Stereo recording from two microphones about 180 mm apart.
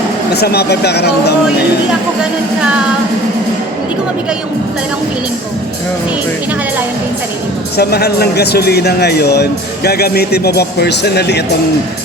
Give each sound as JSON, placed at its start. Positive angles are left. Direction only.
{"t": 0.3, "sound": "speech", "side_deg": 65}
{"t": 7.8, "sound": "speech", "side_deg": 60}